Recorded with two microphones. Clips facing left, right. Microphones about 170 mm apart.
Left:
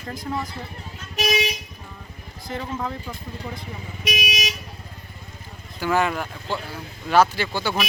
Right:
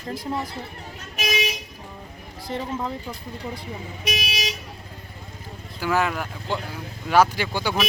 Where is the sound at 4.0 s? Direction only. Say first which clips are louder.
Left 2 dB; 30° right (ahead or behind).